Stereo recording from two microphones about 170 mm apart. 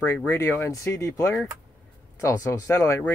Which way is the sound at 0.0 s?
15° left (ahead or behind).